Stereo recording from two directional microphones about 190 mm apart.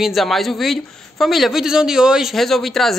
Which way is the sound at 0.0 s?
Centre (ahead or behind).